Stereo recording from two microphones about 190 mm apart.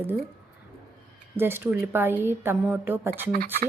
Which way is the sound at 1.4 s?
10° right (ahead or behind).